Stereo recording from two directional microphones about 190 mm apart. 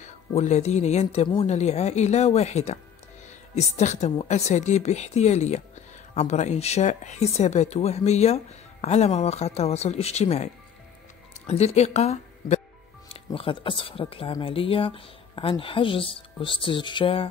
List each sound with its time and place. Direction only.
0.0 s speech: 35° left (ahead or behind)